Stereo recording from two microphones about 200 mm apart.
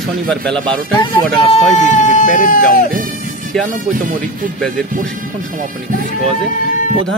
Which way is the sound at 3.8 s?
40° right (ahead or behind).